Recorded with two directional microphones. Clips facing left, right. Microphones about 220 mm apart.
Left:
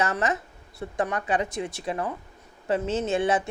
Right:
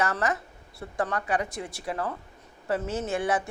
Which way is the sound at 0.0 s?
20° left (ahead or behind).